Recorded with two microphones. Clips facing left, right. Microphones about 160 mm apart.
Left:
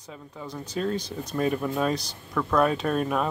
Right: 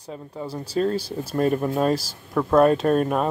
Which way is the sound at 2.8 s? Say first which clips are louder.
Right 5 dB; 40° right (ahead or behind).